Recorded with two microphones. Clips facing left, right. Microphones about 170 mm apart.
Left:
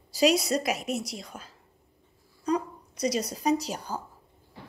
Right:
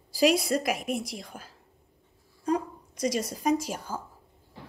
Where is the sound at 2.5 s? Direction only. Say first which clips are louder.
Even; 50° right (ahead or behind).